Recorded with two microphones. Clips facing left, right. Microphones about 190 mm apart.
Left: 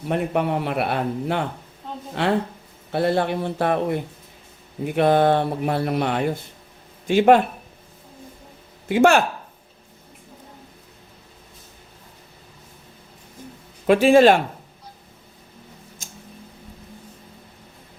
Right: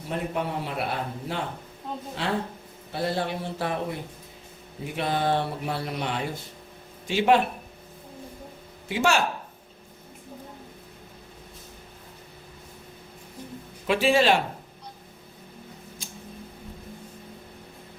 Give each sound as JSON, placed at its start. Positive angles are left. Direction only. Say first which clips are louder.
{"t": 0.1, "sound": "a man's voice", "louder": "left 7 dB", "side_deg": 65}
{"t": 8.9, "sound": "speech", "louder": "left 8 dB", "side_deg": 55}
{"t": 13.8, "sound": "a man's voice", "louder": "left 8 dB", "side_deg": 50}
{"t": 16.0, "sound": "tick-tock", "louder": "right 2 dB", "side_deg": 45}